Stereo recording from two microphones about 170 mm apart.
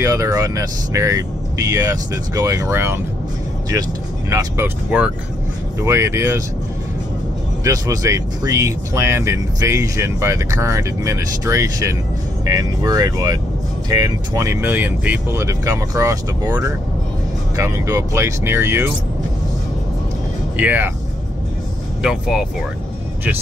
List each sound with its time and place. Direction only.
0.0 s speech: 20° right (ahead or behind)
4.3 s speech: 15° right (ahead or behind)
7.6 s speech: 20° right (ahead or behind)
20.5 s speech: 10° right (ahead or behind)
22.0 s speech: 5° right (ahead or behind)